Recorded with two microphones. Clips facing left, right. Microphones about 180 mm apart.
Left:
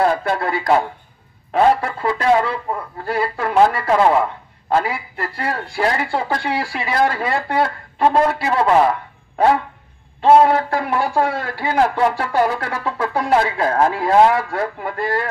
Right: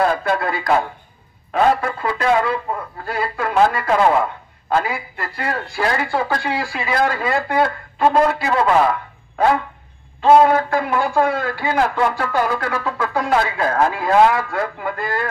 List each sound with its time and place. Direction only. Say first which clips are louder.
0.0 s speech: even; 25° left (ahead or behind)
10.2 s speech: even; 30° left (ahead or behind)